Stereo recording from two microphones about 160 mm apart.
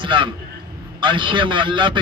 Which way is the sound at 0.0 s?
30° right (ahead or behind).